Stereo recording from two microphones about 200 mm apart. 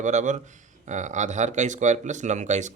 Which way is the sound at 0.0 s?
35° right (ahead or behind).